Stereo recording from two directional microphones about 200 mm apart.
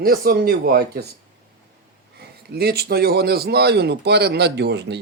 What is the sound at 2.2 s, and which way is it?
A man's voice, 50° right (ahead or behind).